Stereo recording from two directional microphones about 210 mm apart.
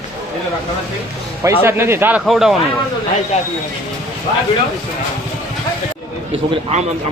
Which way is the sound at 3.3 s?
30° left (ahead or behind).